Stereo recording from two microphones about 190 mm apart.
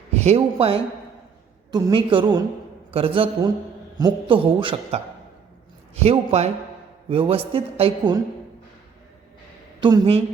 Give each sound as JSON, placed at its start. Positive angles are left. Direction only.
{"t": 0.1, "sound": "a woman's voice", "side_deg": -35}
{"t": 9.8, "sound": "a woman's voice", "side_deg": -25}